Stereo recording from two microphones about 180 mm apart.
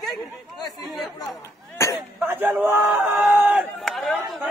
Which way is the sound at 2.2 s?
10° right (ahead or behind).